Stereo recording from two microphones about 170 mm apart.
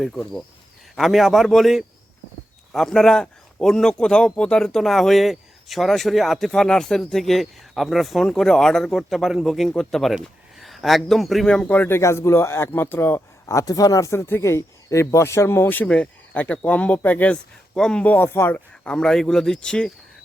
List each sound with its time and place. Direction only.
0.0 s a man's voice: 5° left (ahead or behind)